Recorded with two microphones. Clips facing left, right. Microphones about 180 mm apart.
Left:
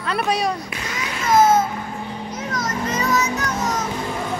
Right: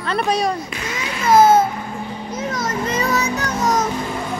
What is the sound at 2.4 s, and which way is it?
Children playing, 30° right (ahead or behind).